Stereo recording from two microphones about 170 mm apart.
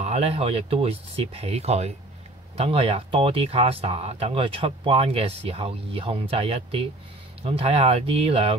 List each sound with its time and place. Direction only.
0.0 s speech: 35° right (ahead or behind)